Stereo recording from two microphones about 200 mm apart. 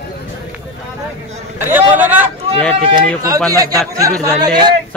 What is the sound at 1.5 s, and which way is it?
Speech, 10° right (ahead or behind).